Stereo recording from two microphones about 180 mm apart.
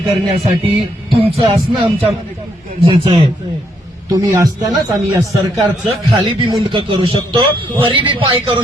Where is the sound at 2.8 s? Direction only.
30° right (ahead or behind).